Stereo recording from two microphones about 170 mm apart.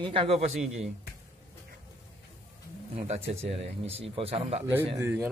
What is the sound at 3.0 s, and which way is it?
A man's voice, 40° right (ahead or behind).